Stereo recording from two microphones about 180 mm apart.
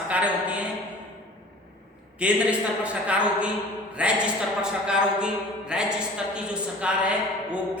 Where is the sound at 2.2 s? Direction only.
5° right (ahead or behind).